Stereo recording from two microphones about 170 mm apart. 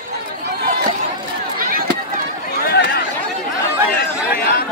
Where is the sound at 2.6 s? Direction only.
65° left (ahead or behind).